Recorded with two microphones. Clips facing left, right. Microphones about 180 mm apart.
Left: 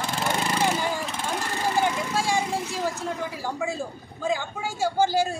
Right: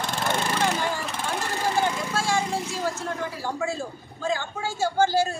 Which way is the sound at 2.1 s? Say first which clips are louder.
Even; 15° left (ahead or behind).